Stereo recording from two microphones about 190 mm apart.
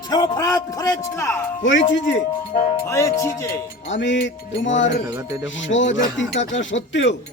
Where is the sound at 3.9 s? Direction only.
75° left (ahead or behind).